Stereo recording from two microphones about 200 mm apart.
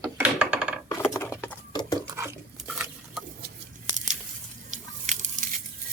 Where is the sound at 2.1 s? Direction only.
15° right (ahead or behind).